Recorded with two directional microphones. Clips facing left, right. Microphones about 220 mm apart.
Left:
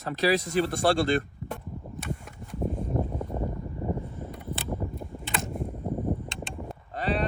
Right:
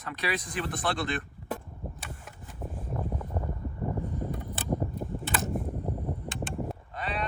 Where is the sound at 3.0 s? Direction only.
25° left (ahead or behind).